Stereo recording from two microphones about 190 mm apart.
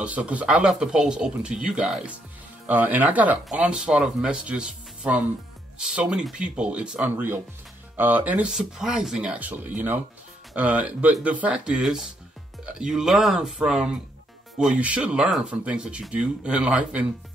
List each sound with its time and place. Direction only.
0.0 s speech: 5° right (ahead or behind)